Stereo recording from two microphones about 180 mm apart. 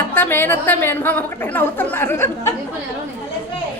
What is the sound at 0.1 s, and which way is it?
A woman's voice, 10° left (ahead or behind).